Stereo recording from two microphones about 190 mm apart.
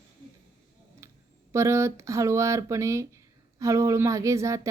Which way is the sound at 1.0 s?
15° right (ahead or behind).